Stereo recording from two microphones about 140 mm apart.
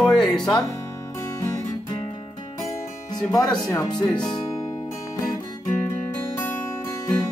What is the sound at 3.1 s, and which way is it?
Speech, 25° left (ahead or behind).